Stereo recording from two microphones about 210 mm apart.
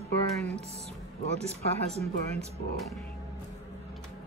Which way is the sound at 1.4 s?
30° right (ahead or behind).